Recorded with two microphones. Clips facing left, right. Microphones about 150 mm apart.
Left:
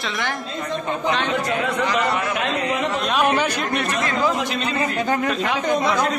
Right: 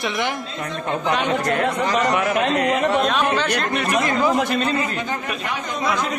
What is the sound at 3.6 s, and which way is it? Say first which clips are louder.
Speech: even; centre (ahead or behind).